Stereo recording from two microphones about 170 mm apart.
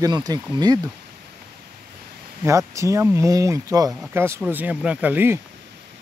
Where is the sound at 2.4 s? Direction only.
15° right (ahead or behind).